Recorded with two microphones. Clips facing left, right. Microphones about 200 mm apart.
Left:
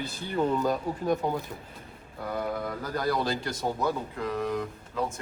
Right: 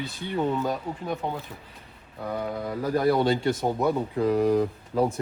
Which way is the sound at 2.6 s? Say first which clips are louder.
Right 6 dB; 25° right (ahead or behind).